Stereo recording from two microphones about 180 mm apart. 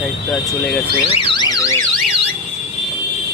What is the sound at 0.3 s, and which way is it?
Speech, centre (ahead or behind).